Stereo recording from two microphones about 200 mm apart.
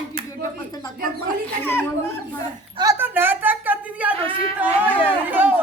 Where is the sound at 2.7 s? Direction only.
15° right (ahead or behind).